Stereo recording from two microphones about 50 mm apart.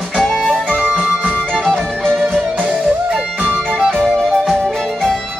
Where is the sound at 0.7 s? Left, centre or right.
Right.